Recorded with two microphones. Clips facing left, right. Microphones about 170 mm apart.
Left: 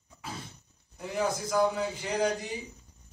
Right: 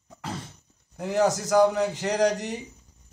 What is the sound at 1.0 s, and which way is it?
Speech, 85° right.